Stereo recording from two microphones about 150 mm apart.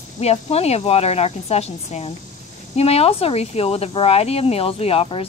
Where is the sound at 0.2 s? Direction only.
45° left (ahead or behind).